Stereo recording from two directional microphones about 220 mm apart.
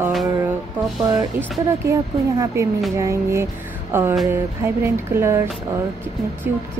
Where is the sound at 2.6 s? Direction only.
15° right (ahead or behind).